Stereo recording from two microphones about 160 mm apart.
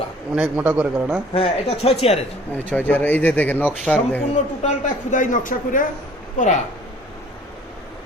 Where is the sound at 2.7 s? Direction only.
10° left (ahead or behind).